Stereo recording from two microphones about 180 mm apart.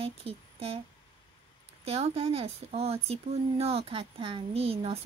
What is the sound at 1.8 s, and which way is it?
Speech, 35° right (ahead or behind).